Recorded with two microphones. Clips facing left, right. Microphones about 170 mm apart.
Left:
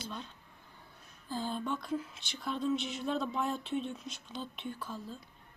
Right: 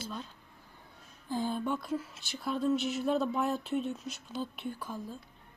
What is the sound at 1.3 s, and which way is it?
Speech, 15° right (ahead or behind).